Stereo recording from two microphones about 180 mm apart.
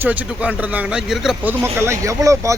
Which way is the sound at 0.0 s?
10° right (ahead or behind).